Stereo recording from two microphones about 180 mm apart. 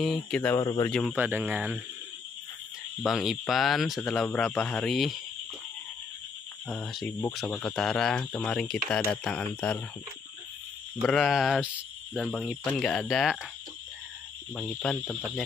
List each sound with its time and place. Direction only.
0.0 s speech: centre (ahead or behind)
0.6 s speech: 25° left (ahead or behind)
1.1 s speech: 10° right (ahead or behind)
3.0 s speech: centre (ahead or behind)
6.7 s speech: centre (ahead or behind)
11.0 s speech: centre (ahead or behind)
14.5 s speech: 10° left (ahead or behind)